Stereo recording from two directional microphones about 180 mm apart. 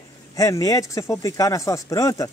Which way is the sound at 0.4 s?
20° left (ahead or behind).